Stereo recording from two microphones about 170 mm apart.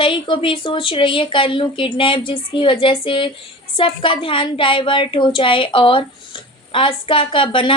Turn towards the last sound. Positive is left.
turn(degrees=30)  # may be behind; listen again after turning